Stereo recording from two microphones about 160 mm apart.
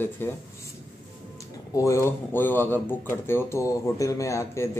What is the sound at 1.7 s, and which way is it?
Speech, 20° left (ahead or behind).